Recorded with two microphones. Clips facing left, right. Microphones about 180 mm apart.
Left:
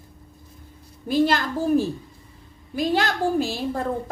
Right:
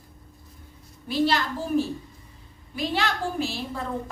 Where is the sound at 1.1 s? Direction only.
50° left (ahead or behind).